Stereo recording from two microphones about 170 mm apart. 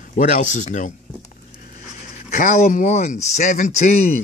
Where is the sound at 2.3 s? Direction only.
50° left (ahead or behind).